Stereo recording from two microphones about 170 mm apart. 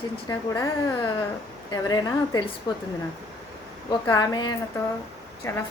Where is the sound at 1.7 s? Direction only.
20° left (ahead or behind).